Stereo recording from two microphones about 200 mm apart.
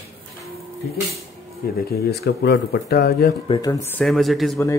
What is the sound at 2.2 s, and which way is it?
Speech, 55° left (ahead or behind).